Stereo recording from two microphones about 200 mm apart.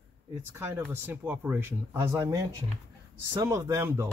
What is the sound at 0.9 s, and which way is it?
Speech, 10° right (ahead or behind).